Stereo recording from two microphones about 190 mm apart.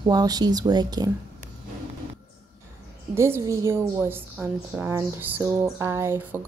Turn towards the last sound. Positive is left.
turn(degrees=-15)  # may be behind; listen again after turning